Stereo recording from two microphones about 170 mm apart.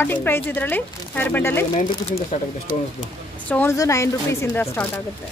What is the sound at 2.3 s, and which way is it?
Speech, 45° left (ahead or behind).